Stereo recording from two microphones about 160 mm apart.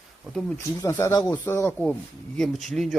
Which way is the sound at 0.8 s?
15° left (ahead or behind).